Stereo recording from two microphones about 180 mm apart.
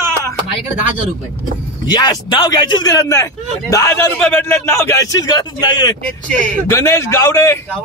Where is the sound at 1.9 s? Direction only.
25° left (ahead or behind).